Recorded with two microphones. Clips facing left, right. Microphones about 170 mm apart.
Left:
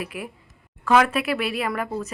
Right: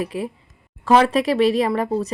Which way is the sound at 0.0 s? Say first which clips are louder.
Right 7 dB; 35° right (ahead or behind).